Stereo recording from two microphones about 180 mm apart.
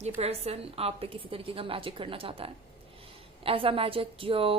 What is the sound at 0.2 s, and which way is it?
A woman's voice, 35° right (ahead or behind).